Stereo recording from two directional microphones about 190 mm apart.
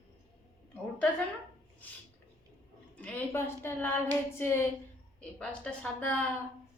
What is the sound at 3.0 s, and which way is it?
A woman's voice, 10° left (ahead or behind).